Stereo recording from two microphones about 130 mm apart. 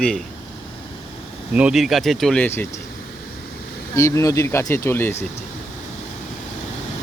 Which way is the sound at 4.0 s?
25° left (ahead or behind).